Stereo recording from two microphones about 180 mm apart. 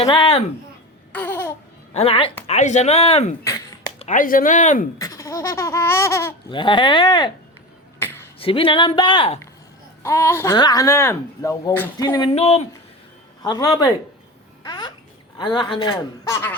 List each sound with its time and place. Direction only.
0.0 s speech: 30° left (ahead or behind)
1.1 s babbling: 10° left (ahead or behind)
1.9 s speech: 35° left (ahead or behind)
3.4 s a sound: 20° left (ahead or behind)
3.9 s speech: 40° left (ahead or behind)
4.9 s speech: 20° left (ahead or behind)
6.5 s a man's voice: 25° left (ahead or behind)
7.9 s finger snapping: 10° left (ahead or behind)
8.4 s a man's voice: 30° left (ahead or behind)
10.0 s speech: 15° left (ahead or behind)
12.3 s speech: 35° left (ahead or behind)
13.4 s a man's voice: 20° left (ahead or behind)
14.6 s babbling: 25° left (ahead or behind)
15.4 s a man's voice: 25° left (ahead or behind)